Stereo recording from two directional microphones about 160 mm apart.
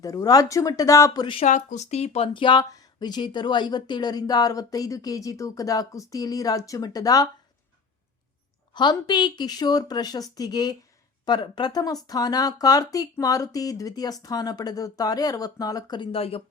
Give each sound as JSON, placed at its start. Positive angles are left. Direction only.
{"t": 0.0, "sound": "speech", "side_deg": 20}
{"t": 1.5, "sound": "speech", "side_deg": 50}
{"t": 8.7, "sound": "speech", "side_deg": 30}